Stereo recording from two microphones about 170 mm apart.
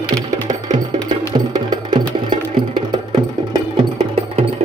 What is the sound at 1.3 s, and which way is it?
Music, 25° right (ahead or behind).